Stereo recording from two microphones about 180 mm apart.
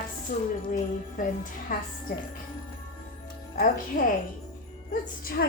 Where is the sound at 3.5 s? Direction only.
45° left (ahead or behind).